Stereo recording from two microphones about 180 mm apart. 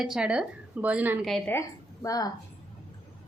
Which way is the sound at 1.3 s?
5° left (ahead or behind).